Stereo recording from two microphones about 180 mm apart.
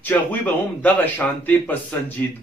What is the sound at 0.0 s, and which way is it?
A man's voice, 10° left (ahead or behind).